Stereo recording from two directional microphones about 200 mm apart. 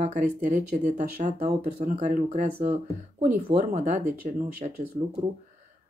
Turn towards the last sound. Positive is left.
turn(degrees=-35)  # may be behind; listen again after turning